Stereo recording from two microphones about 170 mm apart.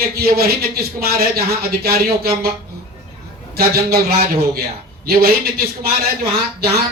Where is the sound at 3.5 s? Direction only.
65° right (ahead or behind).